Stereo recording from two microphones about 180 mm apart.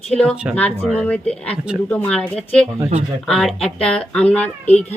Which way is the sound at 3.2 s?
5° left (ahead or behind).